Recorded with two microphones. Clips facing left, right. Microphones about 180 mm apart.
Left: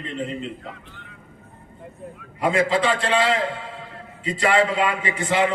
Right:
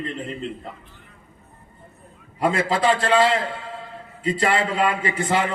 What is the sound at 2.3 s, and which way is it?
A man's voice, 40° right (ahead or behind).